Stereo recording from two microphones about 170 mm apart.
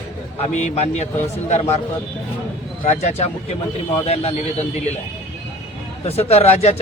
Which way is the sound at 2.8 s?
40° left (ahead or behind).